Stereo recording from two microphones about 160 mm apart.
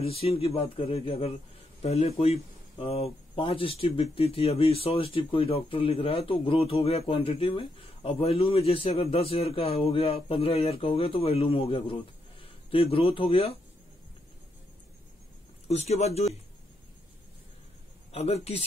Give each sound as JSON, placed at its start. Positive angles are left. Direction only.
{"t": 0.0, "sound": "speech", "side_deg": 40}
{"t": 15.7, "sound": "speech", "side_deg": 40}
{"t": 18.1, "sound": "speech", "side_deg": 40}